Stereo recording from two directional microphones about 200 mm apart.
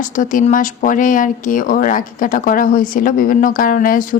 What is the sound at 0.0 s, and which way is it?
Speech, 40° left (ahead or behind).